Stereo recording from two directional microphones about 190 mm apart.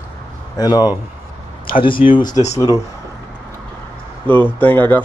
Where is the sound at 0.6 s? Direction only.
20° left (ahead or behind).